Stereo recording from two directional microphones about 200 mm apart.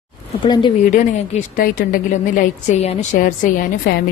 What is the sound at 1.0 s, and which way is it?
A woman's voice, 35° left (ahead or behind).